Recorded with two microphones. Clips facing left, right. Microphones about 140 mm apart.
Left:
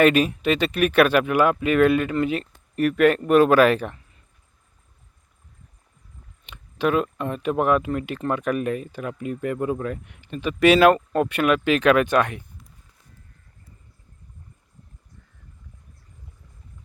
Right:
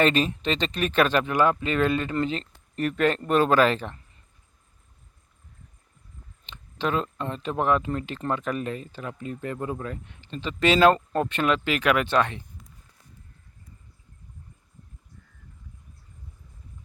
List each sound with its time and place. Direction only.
0.0 s speech: 10° left (ahead or behind)
6.4 s speech: 10° left (ahead or behind)